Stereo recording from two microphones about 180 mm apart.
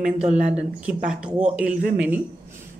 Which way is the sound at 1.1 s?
5° right (ahead or behind).